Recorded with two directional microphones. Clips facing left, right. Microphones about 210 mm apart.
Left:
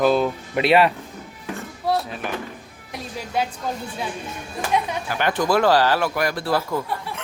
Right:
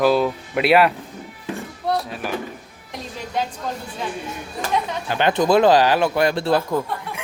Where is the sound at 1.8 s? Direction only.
Centre (ahead or behind).